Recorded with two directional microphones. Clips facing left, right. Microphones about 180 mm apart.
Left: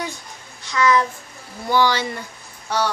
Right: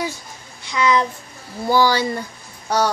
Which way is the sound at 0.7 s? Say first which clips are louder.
Even; 15° right (ahead or behind).